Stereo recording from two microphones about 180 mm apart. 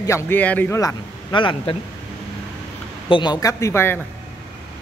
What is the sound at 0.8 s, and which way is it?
Speech, 25° left (ahead or behind).